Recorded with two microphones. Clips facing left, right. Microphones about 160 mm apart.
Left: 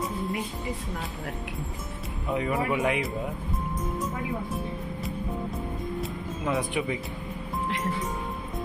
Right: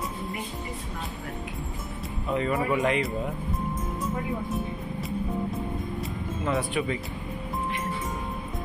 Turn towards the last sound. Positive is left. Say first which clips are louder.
# right 1 dB
turn(degrees=15)  # may be behind; listen again after turning